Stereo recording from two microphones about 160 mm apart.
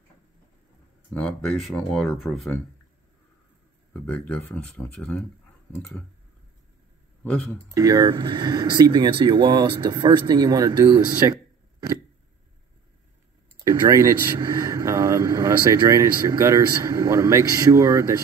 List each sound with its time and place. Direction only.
1.1 s speech: 5° left (ahead or behind)
3.9 s speech: 10° left (ahead or behind)
7.7 s speech: 20° right (ahead or behind)
13.7 s speech: 20° right (ahead or behind)